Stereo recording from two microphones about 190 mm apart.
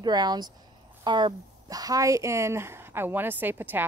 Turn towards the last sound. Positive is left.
turn(degrees=-10)  # may be behind; listen again after turning